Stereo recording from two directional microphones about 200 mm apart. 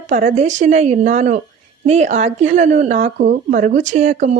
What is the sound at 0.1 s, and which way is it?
Speech, 40° right (ahead or behind).